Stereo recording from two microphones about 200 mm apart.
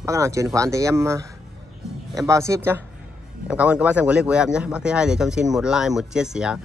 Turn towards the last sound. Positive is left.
turn(degrees=-5)  # may be behind; listen again after turning